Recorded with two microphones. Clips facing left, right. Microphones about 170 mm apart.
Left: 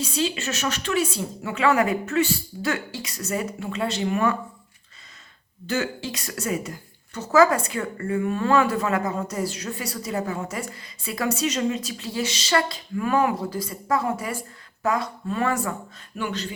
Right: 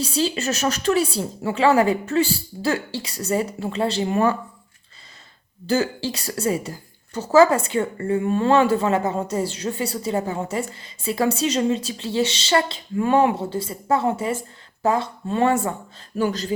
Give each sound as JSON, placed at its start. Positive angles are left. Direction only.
{"t": 0.0, "sound": "speech", "side_deg": -35}
{"t": 5.6, "sound": "a woman's voice", "side_deg": -35}
{"t": 16.1, "sound": "speech", "side_deg": -40}